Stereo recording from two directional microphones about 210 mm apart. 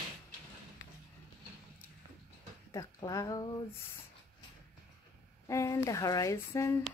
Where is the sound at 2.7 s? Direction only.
15° left (ahead or behind).